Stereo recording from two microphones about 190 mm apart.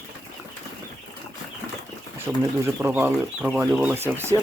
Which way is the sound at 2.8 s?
10° right (ahead or behind).